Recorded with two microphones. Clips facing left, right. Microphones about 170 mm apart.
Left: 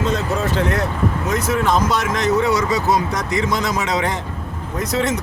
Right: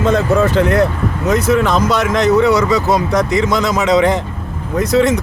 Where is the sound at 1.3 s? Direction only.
75° right (ahead or behind).